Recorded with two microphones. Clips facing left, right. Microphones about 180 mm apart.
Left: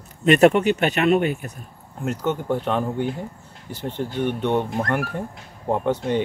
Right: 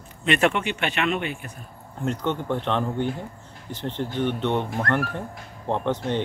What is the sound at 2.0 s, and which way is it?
Speech, 5° left (ahead or behind).